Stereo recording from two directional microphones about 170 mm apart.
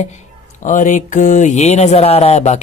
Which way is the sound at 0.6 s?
50° left (ahead or behind).